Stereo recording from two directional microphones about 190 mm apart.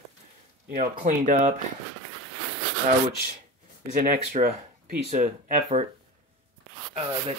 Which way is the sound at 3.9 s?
50° right (ahead or behind).